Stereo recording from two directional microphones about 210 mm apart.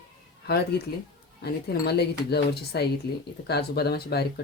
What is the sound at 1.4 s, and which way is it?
Speech, 50° left (ahead or behind).